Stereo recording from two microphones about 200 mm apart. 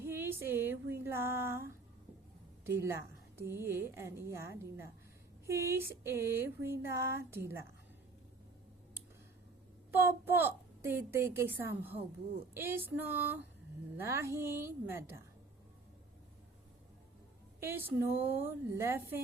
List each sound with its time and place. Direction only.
0.0 s a sound: 10° right (ahead or behind)
1.0 s a woman's voice: 10° right (ahead or behind)
9.9 s a child's voice: 10° right (ahead or behind)
17.6 s a woman's voice: 10° right (ahead or behind)